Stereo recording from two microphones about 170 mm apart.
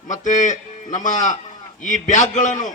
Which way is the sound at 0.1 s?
45° left (ahead or behind).